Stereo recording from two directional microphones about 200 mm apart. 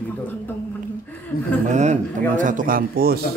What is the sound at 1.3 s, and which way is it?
Speech, 50° left (ahead or behind).